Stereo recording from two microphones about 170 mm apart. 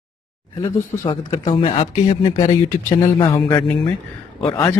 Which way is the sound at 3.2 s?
25° left (ahead or behind).